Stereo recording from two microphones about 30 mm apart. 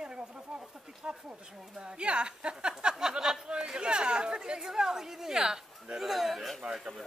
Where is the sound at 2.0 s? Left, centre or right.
Right.